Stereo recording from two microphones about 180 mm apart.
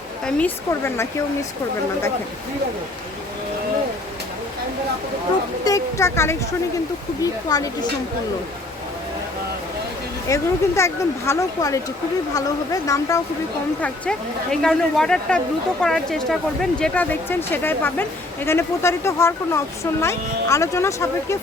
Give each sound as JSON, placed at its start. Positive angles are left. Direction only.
{"t": 0.3, "sound": "speech", "side_deg": 5}
{"t": 5.6, "sound": "speech", "side_deg": 15}
{"t": 10.2, "sound": "speech", "side_deg": 15}
{"t": 13.8, "sound": "a woman's voice", "side_deg": 5}